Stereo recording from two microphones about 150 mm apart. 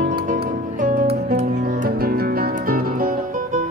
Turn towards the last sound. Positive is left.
turn(degrees=-75)  # may be behind; listen again after turning